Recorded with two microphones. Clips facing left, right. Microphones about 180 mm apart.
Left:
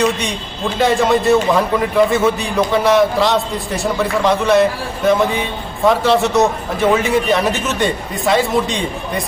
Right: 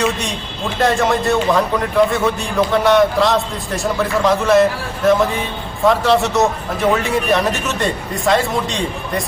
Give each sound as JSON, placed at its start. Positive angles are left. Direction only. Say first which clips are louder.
{"t": 0.0, "sound": "a man's voice", "louder": "left 2 dB", "side_deg": 0}